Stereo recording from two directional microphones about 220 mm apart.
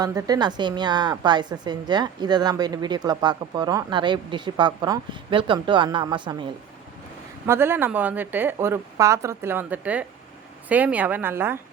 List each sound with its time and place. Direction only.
0.0 s a woman's voice: 15° right (ahead or behind)
7.4 s speech: 10° right (ahead or behind)